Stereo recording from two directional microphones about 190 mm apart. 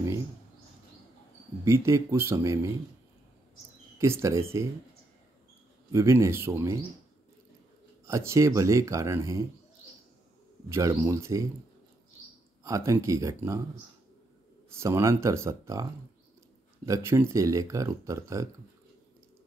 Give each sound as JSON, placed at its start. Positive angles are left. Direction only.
{"t": 1.6, "sound": "speech", "side_deg": -15}
{"t": 4.0, "sound": "speech", "side_deg": -15}
{"t": 5.9, "sound": "speech", "side_deg": -15}
{"t": 8.0, "sound": "speech", "side_deg": -15}
{"t": 10.7, "sound": "speech", "side_deg": -15}
{"t": 12.6, "sound": "speech", "side_deg": -15}
{"t": 14.8, "sound": "speech", "side_deg": -15}